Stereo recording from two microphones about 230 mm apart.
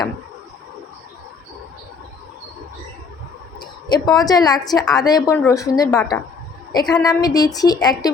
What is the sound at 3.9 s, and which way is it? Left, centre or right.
A woman's voice, centre.